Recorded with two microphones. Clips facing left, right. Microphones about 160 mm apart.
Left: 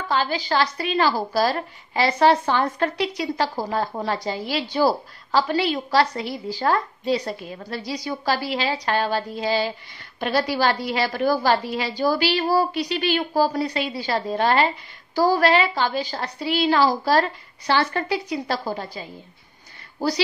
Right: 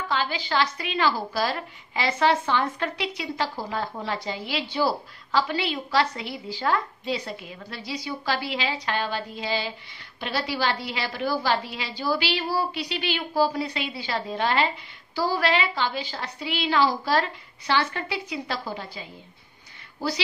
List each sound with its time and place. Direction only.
0.1 s a woman's voice: 40° left (ahead or behind)